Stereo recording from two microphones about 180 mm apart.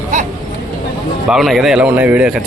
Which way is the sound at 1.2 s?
Centre (ahead or behind).